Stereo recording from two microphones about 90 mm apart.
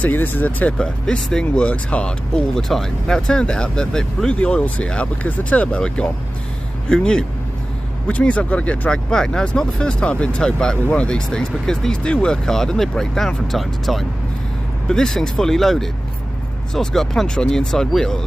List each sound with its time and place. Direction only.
0.0 s speech: 20° left (ahead or behind); by 18.2 s 5° left (ahead or behind)